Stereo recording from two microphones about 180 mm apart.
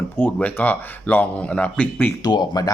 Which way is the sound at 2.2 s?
20° left (ahead or behind).